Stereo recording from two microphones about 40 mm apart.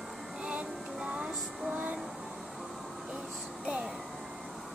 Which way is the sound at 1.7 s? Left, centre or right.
Right.